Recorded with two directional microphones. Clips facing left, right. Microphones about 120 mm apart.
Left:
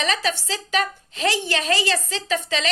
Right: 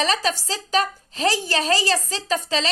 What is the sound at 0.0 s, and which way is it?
A woman's voice, 35° right (ahead or behind).